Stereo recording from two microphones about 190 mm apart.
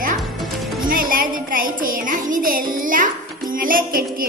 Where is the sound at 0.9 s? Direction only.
50° right (ahead or behind).